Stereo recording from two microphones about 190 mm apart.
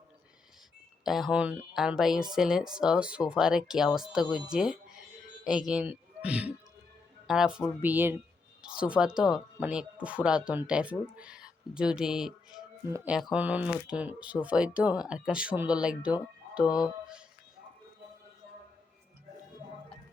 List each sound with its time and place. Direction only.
1.0 s speech: centre (ahead or behind)
12.8 s speech: 15° right (ahead or behind)
16.6 s speech: 20° left (ahead or behind)